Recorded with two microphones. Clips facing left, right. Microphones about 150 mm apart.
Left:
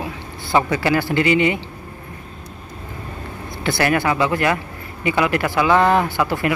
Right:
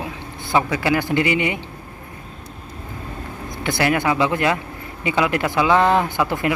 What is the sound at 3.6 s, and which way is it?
A man's voice, 15° right (ahead or behind).